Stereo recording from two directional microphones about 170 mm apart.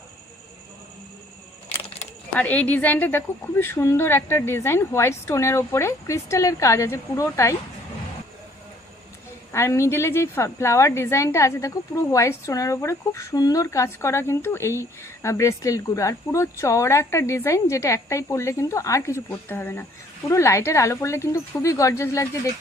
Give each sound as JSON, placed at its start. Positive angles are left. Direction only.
{"t": 2.3, "sound": "speech", "side_deg": 10}
{"t": 9.5, "sound": "speech", "side_deg": 15}